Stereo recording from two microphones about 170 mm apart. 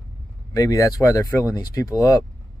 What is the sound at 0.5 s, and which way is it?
Speech, 20° left (ahead or behind).